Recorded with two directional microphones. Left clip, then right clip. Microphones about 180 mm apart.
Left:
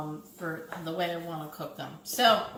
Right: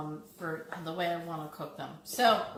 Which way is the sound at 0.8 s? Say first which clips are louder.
Left 2 dB; 15° right (ahead or behind).